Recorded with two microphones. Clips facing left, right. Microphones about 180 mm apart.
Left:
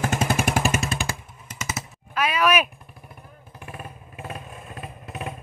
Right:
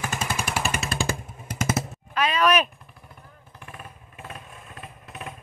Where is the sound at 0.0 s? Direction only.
55° left (ahead or behind).